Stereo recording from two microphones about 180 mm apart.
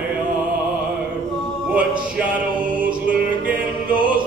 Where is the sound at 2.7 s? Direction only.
5° right (ahead or behind).